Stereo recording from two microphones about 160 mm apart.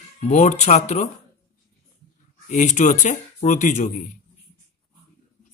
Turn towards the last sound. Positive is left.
turn(degrees=50)  # may be behind; listen again after turning